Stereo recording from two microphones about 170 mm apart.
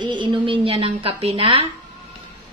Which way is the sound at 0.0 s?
30° right (ahead or behind).